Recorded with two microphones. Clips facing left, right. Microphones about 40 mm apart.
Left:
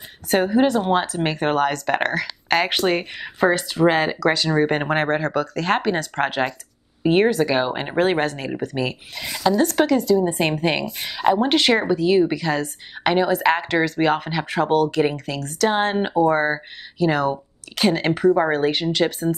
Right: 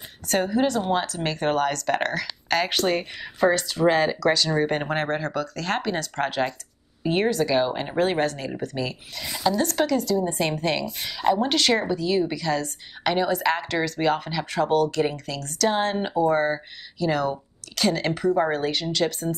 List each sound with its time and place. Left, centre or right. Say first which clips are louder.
0.3 s speech: left 5 dB; left